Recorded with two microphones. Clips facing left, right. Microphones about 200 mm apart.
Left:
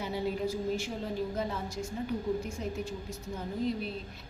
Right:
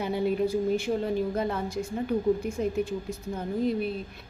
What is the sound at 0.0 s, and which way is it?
A woman's voice, 60° right (ahead or behind).